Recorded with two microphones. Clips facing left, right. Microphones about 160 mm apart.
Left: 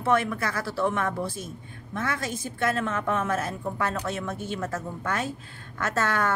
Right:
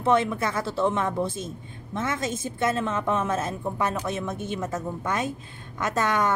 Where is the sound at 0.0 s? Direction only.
20° right (ahead or behind).